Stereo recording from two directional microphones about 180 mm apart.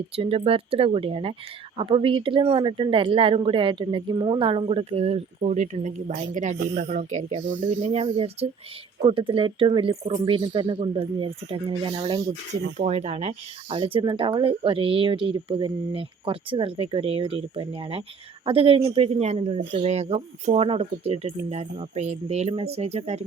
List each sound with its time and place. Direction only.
0.2 s speech: 30° right (ahead or behind)
6.6 s speech: 70° right (ahead or behind)
6.9 s speech: 40° right (ahead or behind)